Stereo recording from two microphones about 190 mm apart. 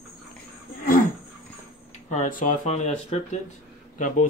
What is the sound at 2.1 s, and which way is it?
Speech, 40° left (ahead or behind).